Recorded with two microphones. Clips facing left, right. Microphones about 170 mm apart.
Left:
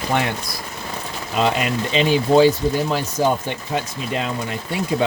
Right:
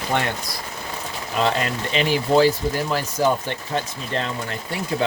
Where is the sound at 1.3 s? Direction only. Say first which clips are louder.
Left 2 dB; 15° left (ahead or behind).